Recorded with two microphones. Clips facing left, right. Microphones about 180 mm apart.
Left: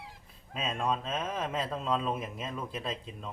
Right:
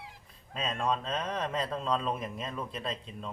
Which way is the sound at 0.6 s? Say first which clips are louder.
Even; 5° left (ahead or behind).